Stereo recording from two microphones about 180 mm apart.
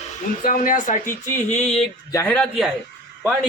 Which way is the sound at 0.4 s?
50° left (ahead or behind).